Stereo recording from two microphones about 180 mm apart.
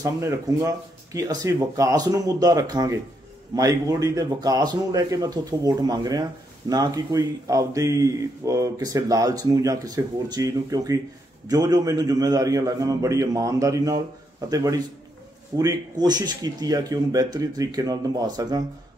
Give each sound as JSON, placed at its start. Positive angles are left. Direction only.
{"t": 0.0, "sound": "speech", "side_deg": -15}